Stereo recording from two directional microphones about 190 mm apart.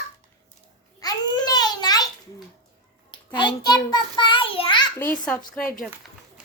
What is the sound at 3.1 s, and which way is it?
Child singing, 25° left (ahead or behind).